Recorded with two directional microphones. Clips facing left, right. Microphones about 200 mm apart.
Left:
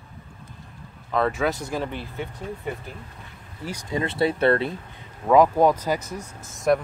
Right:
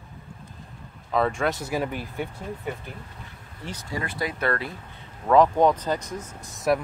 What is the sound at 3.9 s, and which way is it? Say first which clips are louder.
Speech: left 7 dB; 25° left (ahead or behind).